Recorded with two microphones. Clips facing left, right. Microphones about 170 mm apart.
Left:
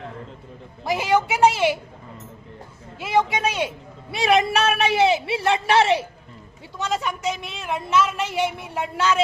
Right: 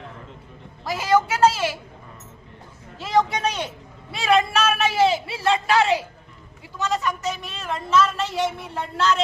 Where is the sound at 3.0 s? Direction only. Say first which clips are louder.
Even; 10° left (ahead or behind).